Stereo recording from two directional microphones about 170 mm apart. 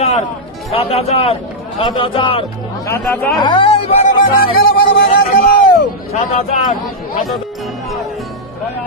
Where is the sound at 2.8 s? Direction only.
15° left (ahead or behind).